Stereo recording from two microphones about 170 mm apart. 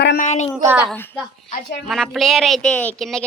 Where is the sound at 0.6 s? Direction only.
15° right (ahead or behind).